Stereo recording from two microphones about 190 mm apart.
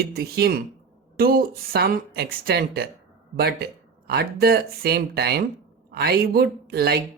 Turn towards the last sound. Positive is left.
turn(degrees=-55)  # may be behind; listen again after turning